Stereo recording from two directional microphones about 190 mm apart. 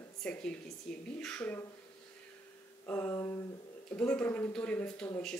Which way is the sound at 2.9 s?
10° left (ahead or behind).